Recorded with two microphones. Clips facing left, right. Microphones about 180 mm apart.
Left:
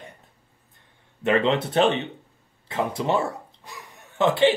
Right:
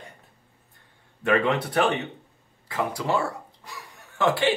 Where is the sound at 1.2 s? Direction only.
25° left (ahead or behind).